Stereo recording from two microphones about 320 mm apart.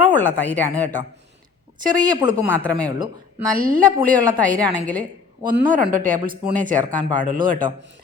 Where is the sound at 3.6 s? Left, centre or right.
Right.